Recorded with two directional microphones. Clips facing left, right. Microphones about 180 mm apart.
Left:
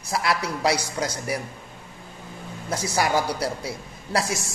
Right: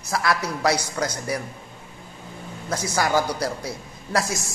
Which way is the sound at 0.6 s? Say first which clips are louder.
Right 2 dB; 25° left (ahead or behind).